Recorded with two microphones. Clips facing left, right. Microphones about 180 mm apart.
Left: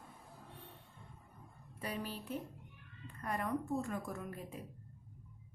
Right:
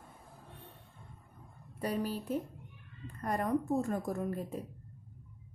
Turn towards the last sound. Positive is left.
turn(degrees=-40)  # may be behind; listen again after turning